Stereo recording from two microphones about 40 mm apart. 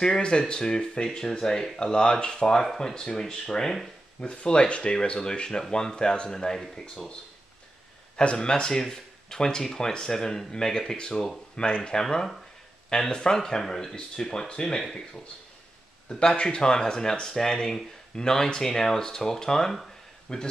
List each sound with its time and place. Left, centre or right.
0.0 s speech: left
8.2 s speech: left
16.1 s speech: left